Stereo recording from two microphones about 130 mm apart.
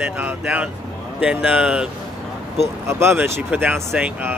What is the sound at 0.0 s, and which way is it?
Speech, 10° right (ahead or behind).